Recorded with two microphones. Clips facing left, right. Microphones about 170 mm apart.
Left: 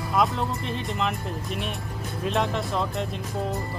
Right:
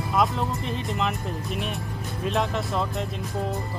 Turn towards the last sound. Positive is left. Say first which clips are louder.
# even
turn(degrees=0)  # may be behind; listen again after turning